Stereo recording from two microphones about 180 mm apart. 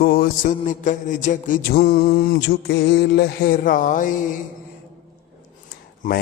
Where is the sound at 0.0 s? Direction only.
55° left (ahead or behind).